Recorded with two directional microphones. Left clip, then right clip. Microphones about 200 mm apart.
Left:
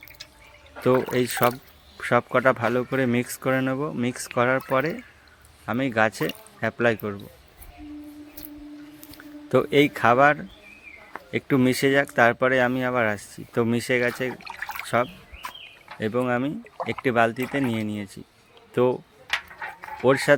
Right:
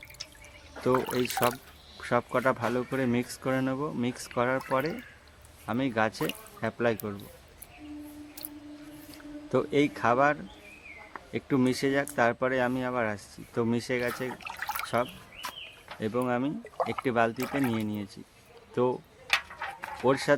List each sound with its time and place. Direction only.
1.1 s speech: 20° left (ahead or behind)
9.1 s speech: 20° left (ahead or behind)
20.1 s speech: 15° left (ahead or behind)